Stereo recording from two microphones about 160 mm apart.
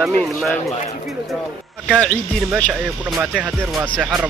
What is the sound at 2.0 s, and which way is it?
Speech, 5° left (ahead or behind).